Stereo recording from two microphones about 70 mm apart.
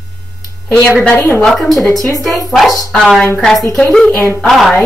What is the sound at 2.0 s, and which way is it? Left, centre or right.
Speech, left.